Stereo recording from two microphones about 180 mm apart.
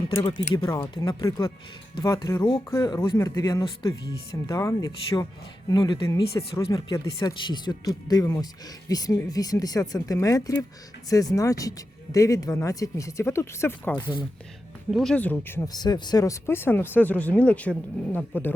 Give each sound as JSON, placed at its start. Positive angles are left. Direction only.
{"t": 0.2, "sound": "speech", "side_deg": 30}
{"t": 14.8, "sound": "speech", "side_deg": 0}